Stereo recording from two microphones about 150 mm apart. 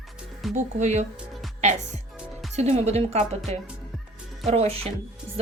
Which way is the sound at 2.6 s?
45° right (ahead or behind).